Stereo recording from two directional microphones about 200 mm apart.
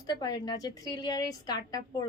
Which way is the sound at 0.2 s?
20° left (ahead or behind).